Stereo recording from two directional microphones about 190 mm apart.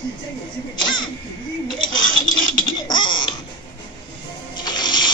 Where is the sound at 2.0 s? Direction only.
45° left (ahead or behind).